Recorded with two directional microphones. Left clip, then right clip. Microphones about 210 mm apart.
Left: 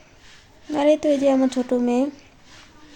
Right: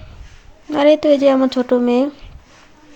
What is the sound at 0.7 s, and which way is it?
Speech, 10° right (ahead or behind).